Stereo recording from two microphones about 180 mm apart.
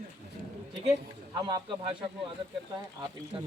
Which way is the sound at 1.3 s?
25° right (ahead or behind).